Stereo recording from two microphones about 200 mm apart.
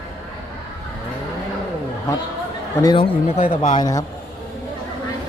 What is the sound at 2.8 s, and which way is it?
Speech, 25° left (ahead or behind).